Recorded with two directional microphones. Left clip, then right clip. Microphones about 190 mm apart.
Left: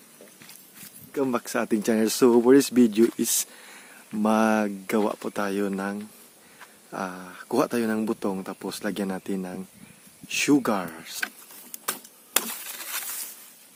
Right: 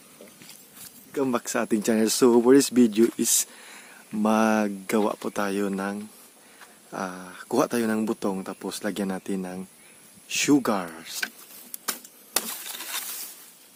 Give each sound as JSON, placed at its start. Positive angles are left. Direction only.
{"t": 1.1, "sound": "speech", "side_deg": -5}